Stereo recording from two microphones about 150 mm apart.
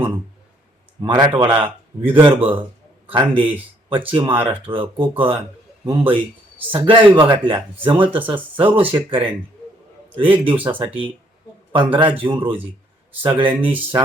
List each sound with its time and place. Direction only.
1.0 s speech: 30° right (ahead or behind)
13.7 s speech: 10° right (ahead or behind)